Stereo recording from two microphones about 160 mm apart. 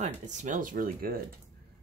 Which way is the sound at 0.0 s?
50° right (ahead or behind).